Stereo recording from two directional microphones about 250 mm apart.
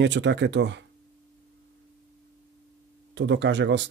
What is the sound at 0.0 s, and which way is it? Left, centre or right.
Speech, right.